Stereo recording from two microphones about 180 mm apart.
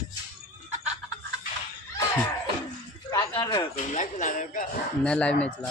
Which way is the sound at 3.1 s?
25° left (ahead or behind).